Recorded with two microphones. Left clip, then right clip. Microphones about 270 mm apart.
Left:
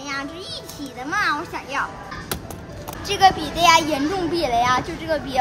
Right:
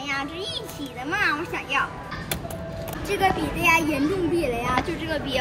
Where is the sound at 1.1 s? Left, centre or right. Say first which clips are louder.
Left 2 dB; centre.